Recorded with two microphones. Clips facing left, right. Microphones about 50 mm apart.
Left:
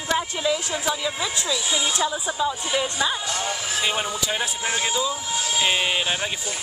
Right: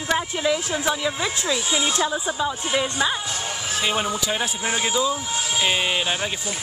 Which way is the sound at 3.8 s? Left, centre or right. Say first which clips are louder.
Right 3 dB; centre.